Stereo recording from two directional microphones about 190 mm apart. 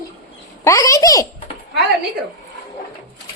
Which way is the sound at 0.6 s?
15° left (ahead or behind).